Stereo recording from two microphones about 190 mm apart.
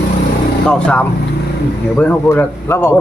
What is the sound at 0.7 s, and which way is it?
Speech, 5° left (ahead or behind).